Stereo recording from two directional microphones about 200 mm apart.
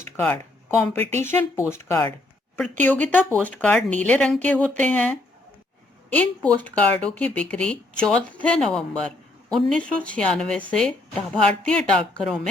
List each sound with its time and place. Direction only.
0.0 s a sound: 10° left (ahead or behind)
0.8 s speech: 10° left (ahead or behind)
6.1 s speech: 5° left (ahead or behind)